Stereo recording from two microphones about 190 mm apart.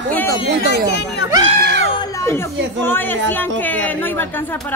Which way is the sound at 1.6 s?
65° right (ahead or behind).